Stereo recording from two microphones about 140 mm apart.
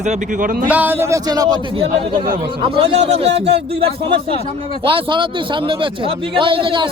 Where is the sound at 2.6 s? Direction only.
45° right (ahead or behind).